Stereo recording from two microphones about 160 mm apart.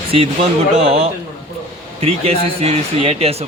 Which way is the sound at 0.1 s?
35° right (ahead or behind).